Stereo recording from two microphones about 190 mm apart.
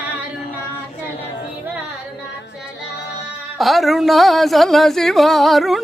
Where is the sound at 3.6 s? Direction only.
Centre (ahead or behind).